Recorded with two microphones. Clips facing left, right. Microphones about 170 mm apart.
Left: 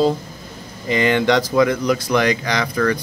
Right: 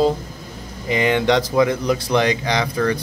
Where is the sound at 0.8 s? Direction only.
15° right (ahead or behind).